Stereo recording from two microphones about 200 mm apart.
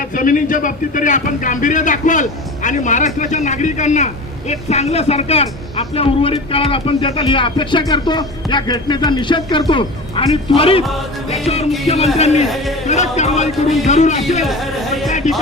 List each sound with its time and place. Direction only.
0.2 s a man's voice: 40° left (ahead or behind)
11.9 s a man's voice: 30° left (ahead or behind)
14.4 s speech: centre (ahead or behind)